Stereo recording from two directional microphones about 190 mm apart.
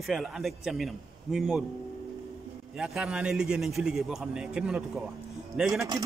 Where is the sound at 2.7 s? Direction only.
5° right (ahead or behind).